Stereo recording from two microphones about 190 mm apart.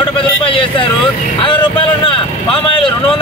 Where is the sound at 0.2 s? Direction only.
25° left (ahead or behind).